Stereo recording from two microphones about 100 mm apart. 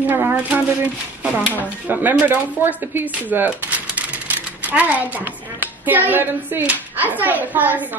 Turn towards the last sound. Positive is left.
turn(degrees=-15)  # may be behind; listen again after turning